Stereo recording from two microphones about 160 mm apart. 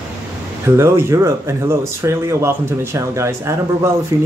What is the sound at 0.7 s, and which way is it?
Speech, 15° right (ahead or behind).